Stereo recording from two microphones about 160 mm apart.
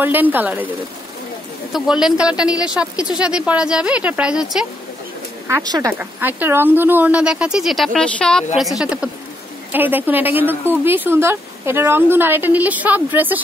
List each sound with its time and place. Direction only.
0.0 s a woman's voice: 10° right (ahead or behind)
1.7 s a woman's voice: 5° right (ahead or behind)
5.5 s speech: 25° right (ahead or behind)
5.9 s a woman's voice: 10° right (ahead or behind)